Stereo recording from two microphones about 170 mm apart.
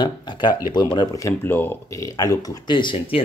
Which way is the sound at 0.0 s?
25° left (ahead or behind).